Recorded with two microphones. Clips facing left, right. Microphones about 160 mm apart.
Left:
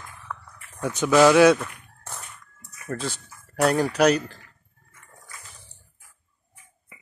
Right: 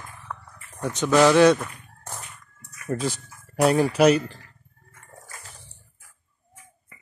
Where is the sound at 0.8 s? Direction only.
5° left (ahead or behind).